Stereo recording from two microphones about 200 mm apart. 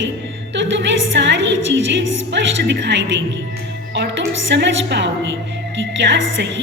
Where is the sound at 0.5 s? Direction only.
65° right (ahead or behind).